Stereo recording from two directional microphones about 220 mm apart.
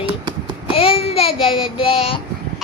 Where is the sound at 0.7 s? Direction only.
25° left (ahead or behind).